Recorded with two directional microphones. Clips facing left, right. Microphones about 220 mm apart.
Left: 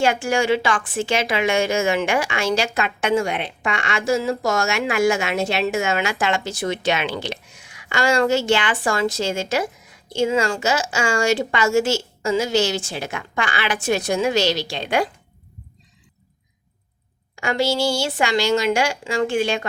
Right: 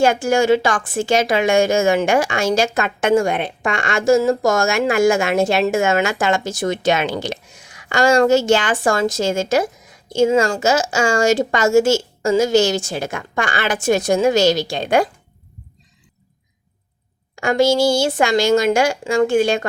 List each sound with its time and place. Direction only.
0.0 s a woman's voice: 45° right (ahead or behind)
17.3 s a woman's voice: 45° right (ahead or behind)